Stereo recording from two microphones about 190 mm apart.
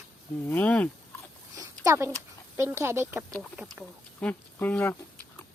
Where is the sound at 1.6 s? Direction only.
15° right (ahead or behind).